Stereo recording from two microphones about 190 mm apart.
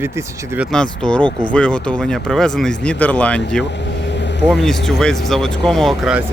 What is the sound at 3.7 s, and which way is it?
Vehicle, 70° left (ahead or behind).